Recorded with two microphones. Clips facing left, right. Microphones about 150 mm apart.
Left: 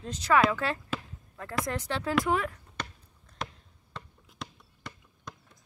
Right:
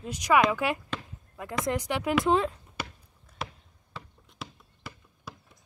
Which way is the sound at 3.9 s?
5° right (ahead or behind).